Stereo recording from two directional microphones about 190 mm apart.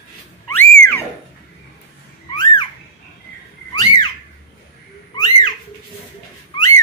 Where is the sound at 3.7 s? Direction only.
20° left (ahead or behind).